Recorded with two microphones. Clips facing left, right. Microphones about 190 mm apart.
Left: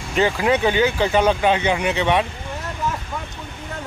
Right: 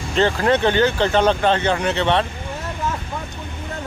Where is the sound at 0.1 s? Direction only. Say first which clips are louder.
Right 1 dB; 10° left (ahead or behind).